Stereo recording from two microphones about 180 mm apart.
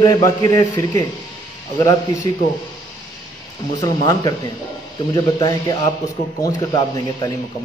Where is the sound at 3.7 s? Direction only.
20° left (ahead or behind).